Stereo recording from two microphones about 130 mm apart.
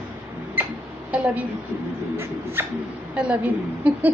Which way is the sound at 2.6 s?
15° right (ahead or behind).